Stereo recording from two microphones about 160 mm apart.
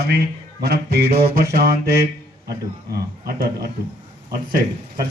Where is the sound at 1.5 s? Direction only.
75° right (ahead or behind).